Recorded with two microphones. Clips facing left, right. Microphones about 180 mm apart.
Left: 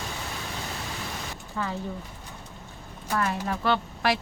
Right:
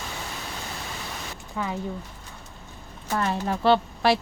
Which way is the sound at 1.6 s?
15° right (ahead or behind).